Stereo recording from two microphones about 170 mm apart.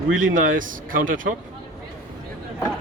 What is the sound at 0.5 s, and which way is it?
Speech, 50° right (ahead or behind).